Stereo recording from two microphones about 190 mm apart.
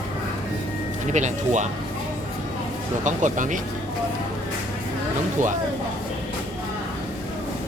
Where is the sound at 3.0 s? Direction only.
40° right (ahead or behind).